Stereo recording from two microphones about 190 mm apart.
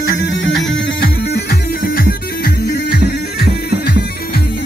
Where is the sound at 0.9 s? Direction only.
55° left (ahead or behind).